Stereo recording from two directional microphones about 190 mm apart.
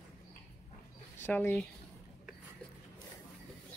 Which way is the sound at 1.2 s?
10° left (ahead or behind).